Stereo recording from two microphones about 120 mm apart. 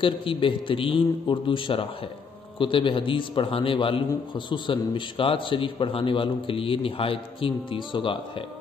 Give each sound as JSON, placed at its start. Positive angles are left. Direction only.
{"t": 0.0, "sound": "a man's voice", "side_deg": 45}